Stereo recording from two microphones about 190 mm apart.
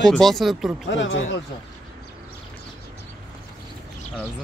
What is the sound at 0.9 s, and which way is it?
Speech, 80° left.